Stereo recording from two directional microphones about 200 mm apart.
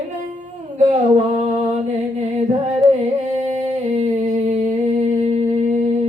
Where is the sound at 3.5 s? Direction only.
35° right (ahead or behind).